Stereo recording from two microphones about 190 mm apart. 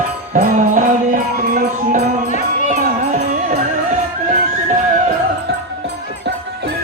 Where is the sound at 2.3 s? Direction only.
40° left (ahead or behind).